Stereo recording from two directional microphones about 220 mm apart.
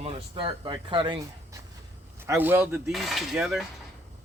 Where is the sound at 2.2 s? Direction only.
10° right (ahead or behind).